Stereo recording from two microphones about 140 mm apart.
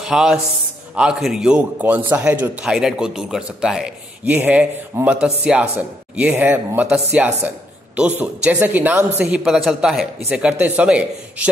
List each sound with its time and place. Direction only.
0.0 s a man's voice: 5° right (ahead or behind)